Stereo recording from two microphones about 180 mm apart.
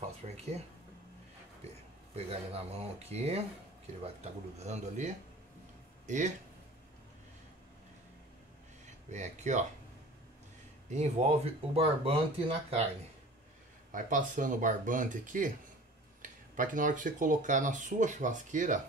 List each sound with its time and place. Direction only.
2.1 s speech: 35° right (ahead or behind)
8.8 s speech: 40° right (ahead or behind)
10.9 s speech: 40° right (ahead or behind)
13.9 s speech: 45° right (ahead or behind)